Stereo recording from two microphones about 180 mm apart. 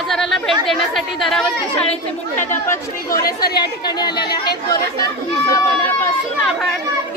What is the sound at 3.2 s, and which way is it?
Speech, 60° left (ahead or behind).